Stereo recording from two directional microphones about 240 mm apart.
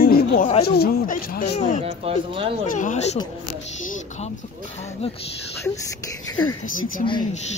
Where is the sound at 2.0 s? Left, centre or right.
Right.